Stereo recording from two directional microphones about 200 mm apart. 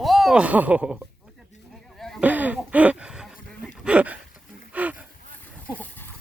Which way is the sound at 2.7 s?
5° right (ahead or behind).